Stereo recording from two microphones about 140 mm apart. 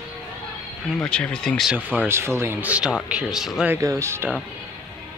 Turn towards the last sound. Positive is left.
turn(degrees=-15)  # may be behind; listen again after turning